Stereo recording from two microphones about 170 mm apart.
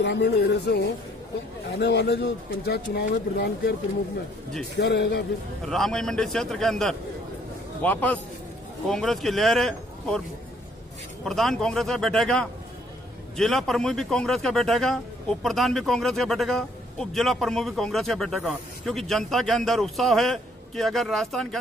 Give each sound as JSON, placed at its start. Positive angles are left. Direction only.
{"t": 0.0, "sound": "speech", "side_deg": 80}
{"t": 4.7, "sound": "speech", "side_deg": 75}
{"t": 5.7, "sound": "a man's voice", "side_deg": 0}
{"t": 11.2, "sound": "a man's voice", "side_deg": 0}